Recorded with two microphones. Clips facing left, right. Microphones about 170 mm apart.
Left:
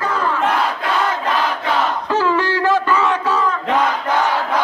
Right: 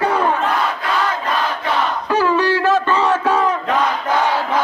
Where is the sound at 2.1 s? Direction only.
15° right (ahead or behind).